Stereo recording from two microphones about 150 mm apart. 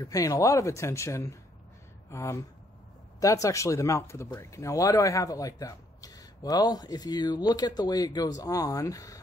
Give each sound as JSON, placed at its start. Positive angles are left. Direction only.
{"t": 0.0, "sound": "speech", "side_deg": 20}